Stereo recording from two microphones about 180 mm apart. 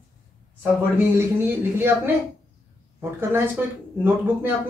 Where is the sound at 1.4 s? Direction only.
10° right (ahead or behind).